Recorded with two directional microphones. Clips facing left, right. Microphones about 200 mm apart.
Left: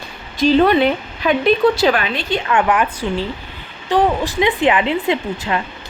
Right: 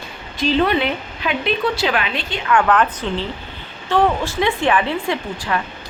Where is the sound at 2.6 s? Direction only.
10° left (ahead or behind).